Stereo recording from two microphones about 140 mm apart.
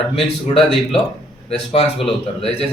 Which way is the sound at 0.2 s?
45° left (ahead or behind).